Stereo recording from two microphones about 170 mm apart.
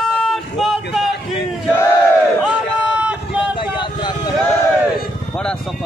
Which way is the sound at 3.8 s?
25° left (ahead or behind).